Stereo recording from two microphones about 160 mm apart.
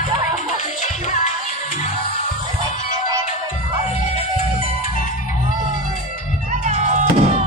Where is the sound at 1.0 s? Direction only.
45° left (ahead or behind).